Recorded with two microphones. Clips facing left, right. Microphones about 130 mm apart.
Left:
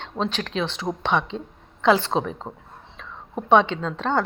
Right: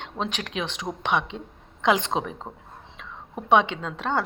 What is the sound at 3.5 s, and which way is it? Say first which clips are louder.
Speech: left 2 dB; 15° right (ahead or behind).